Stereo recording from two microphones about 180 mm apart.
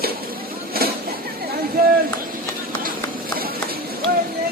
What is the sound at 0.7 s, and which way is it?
Vehicle, 55° right (ahead or behind).